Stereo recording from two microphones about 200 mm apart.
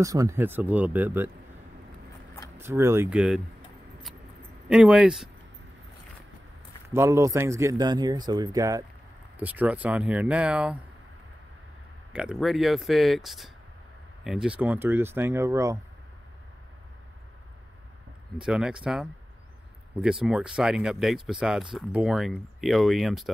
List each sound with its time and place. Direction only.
0.0 s speech: 15° right (ahead or behind)
2.5 s speech: 10° right (ahead or behind)
4.6 s speech: 5° right (ahead or behind)
6.9 s speech: 15° right (ahead or behind)
12.1 s speech: 5° right (ahead or behind)
18.4 s speech: 5° right (ahead or behind)
20.0 s speech: 5° right (ahead or behind)